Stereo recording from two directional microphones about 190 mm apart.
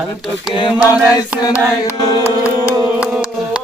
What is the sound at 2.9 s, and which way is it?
Chant, 5° right (ahead or behind).